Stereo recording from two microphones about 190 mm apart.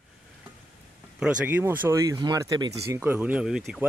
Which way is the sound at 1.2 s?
10° right (ahead or behind).